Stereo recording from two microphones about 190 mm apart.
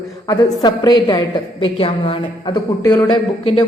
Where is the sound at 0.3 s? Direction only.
20° left (ahead or behind).